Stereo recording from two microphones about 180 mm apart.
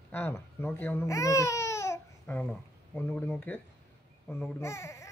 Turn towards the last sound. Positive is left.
turn(degrees=15)  # may be behind; listen again after turning